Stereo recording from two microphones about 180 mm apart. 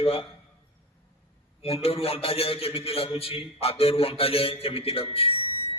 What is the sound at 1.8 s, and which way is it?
A man's voice, 30° left (ahead or behind).